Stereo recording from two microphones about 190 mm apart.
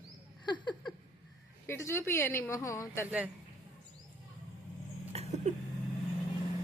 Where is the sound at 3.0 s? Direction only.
10° right (ahead or behind).